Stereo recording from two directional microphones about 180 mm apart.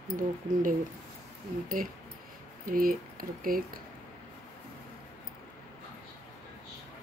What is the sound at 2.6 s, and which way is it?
Speech, 50° right (ahead or behind).